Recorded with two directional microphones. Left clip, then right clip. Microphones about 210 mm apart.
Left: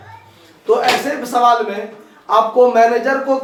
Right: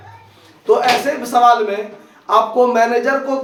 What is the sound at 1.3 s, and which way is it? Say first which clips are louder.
Speech: right 1 dB; 25° right (ahead or behind).